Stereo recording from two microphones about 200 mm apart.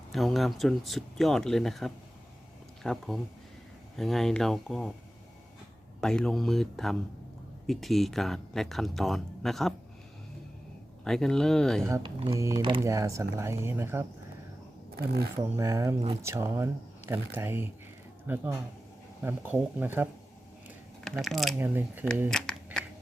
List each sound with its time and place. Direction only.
0.1 s speech: centre (ahead or behind)
6.0 s speech: 5° left (ahead or behind)
11.0 s speech: 5° left (ahead or behind)
11.9 s speech: 25° right (ahead or behind)
14.9 s speech: 50° right (ahead or behind)
15.4 s speech: 15° right (ahead or behind)
21.0 s speech: centre (ahead or behind)
21.6 s speech: 10° right (ahead or behind)
22.3 s a sound: 5° left (ahead or behind)